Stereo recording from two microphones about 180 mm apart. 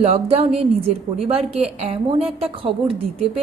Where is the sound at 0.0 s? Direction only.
35° right (ahead or behind).